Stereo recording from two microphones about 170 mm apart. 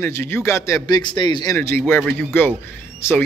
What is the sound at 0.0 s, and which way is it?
A man's voice, 15° left (ahead or behind).